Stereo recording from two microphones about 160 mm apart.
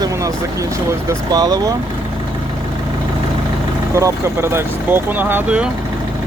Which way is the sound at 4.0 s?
20° right (ahead or behind).